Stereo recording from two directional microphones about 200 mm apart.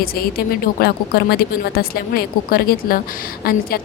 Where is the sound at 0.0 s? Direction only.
50° left (ahead or behind).